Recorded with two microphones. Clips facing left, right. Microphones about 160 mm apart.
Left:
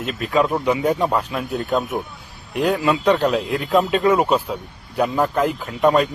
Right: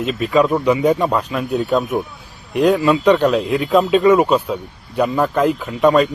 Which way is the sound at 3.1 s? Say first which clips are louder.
Right 4 dB; 65° right (ahead or behind).